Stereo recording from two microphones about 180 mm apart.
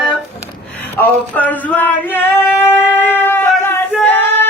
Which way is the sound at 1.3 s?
10° left (ahead or behind).